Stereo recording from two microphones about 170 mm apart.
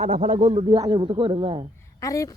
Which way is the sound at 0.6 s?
20° right (ahead or behind).